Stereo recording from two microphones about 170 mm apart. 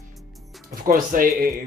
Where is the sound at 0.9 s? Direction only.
55° right (ahead or behind).